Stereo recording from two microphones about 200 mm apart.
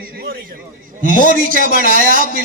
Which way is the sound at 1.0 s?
40° left (ahead or behind).